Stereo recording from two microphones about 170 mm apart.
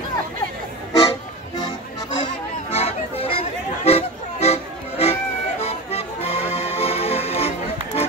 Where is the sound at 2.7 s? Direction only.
35° left (ahead or behind).